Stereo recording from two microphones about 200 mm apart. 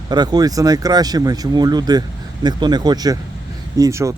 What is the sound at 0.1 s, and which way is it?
Speech, 20° right (ahead or behind).